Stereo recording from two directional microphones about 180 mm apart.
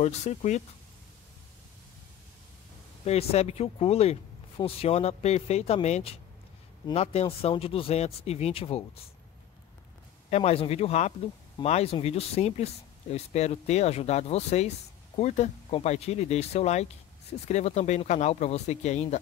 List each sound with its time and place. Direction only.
0.0 s speech: 40° left (ahead or behind)
3.1 s speech: 35° left (ahead or behind)
10.3 s speech: 35° left (ahead or behind)